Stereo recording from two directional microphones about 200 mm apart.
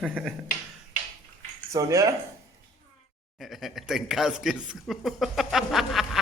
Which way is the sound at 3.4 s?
Centre (ahead or behind).